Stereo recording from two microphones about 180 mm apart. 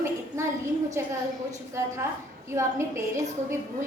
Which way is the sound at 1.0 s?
15° right (ahead or behind).